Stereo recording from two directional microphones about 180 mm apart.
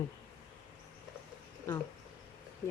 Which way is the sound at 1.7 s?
15° left (ahead or behind).